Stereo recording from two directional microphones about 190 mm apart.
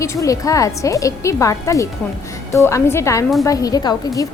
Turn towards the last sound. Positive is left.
turn(degrees=20)  # may be behind; listen again after turning